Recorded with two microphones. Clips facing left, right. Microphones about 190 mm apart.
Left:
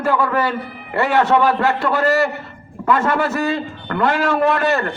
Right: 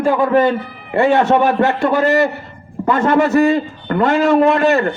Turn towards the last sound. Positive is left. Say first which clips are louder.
# right 5 dB
turn(degrees=-20)  # may be behind; listen again after turning